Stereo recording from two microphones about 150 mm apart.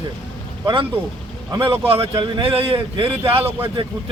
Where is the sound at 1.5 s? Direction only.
35° right (ahead or behind).